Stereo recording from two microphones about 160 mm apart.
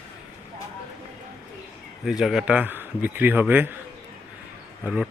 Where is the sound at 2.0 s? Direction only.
5° right (ahead or behind).